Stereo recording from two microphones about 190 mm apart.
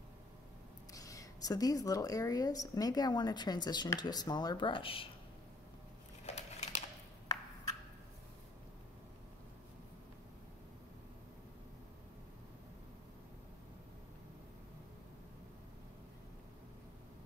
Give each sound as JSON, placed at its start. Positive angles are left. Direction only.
{"t": 0.9, "sound": "a woman's voice", "side_deg": 20}
{"t": 6.2, "sound": "typewriter", "side_deg": 35}